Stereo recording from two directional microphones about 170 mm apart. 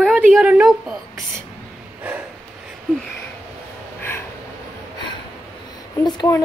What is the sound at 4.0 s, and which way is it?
Snort, 10° left (ahead or behind).